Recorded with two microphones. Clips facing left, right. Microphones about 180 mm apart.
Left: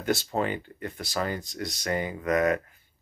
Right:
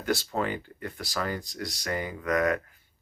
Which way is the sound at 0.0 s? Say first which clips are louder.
Left 2 dB; 25° left (ahead or behind).